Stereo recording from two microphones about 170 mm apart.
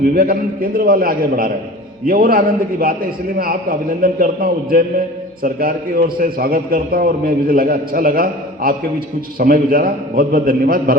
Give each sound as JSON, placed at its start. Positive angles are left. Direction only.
{"t": 0.2, "sound": "a man's voice", "side_deg": -60}